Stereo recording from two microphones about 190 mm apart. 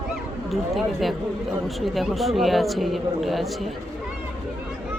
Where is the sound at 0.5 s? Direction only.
Centre (ahead or behind).